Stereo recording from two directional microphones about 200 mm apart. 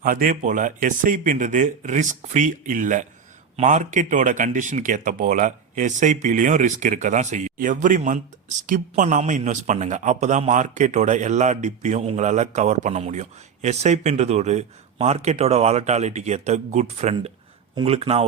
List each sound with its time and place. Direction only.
0.0 s speech: 45° right (ahead or behind)